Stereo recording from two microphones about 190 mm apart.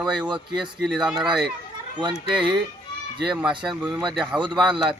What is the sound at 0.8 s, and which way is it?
Speech, 5° right (ahead or behind).